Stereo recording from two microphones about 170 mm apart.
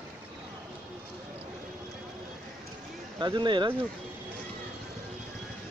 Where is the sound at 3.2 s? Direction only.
25° right (ahead or behind).